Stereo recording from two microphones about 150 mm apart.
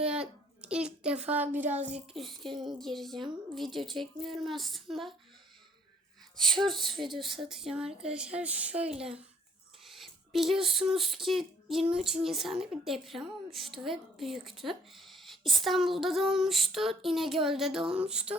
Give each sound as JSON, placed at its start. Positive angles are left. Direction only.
{"t": 0.0, "sound": "speech", "side_deg": -5}
{"t": 2.6, "sound": "a woman's voice", "side_deg": 0}
{"t": 6.7, "sound": "a woman's voice", "side_deg": 0}
{"t": 8.7, "sound": "a woman's voice", "side_deg": -45}
{"t": 9.9, "sound": "a woman's voice", "side_deg": 0}